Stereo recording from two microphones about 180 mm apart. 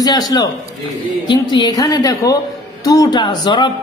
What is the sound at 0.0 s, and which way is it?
A woman's voice, 20° left (ahead or behind).